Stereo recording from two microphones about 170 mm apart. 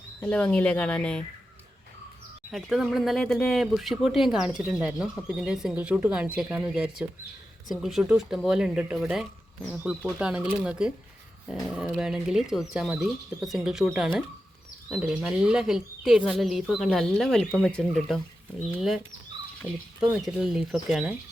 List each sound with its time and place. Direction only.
0.2 s speech: 10° left (ahead or behind)
2.5 s speech: centre (ahead or behind)
19.6 s speech: 10° left (ahead or behind)
20.0 s speech: 5° right (ahead or behind)